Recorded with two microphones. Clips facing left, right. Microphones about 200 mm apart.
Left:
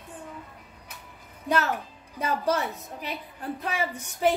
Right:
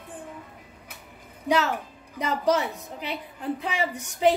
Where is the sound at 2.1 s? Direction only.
15° right (ahead or behind).